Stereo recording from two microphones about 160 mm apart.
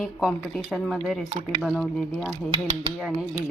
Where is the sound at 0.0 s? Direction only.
Centre (ahead or behind).